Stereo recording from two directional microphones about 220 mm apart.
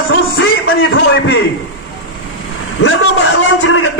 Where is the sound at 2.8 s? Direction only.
65° left (ahead or behind).